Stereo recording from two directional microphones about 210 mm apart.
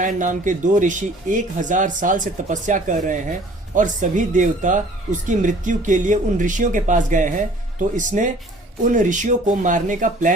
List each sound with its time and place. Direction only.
0.0 s speech: 35° right (ahead or behind)